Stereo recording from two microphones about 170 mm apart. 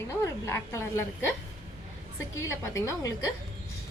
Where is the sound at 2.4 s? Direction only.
15° left (ahead or behind).